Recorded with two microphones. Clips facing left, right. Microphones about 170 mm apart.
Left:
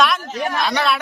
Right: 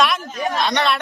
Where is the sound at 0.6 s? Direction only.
5° left (ahead or behind).